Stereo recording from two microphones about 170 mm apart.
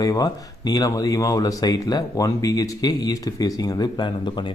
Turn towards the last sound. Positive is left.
turn(degrees=25)  # may be behind; listen again after turning